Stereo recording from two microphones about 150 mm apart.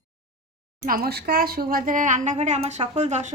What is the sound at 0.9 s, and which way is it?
A woman's voice, 85° right.